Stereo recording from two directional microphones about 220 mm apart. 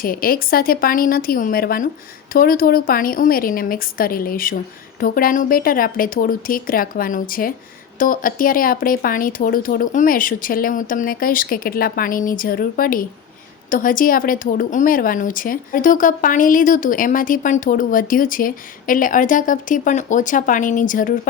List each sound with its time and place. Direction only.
0.0 s a woman's voice: 40° left (ahead or behind)